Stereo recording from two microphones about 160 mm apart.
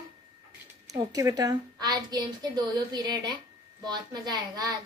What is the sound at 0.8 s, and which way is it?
A woman's voice, 20° right (ahead or behind).